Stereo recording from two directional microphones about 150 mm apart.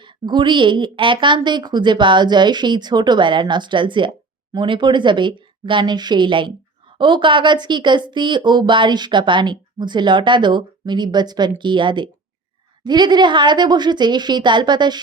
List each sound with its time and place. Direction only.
0.0 s a woman's voice: 30° right (ahead or behind)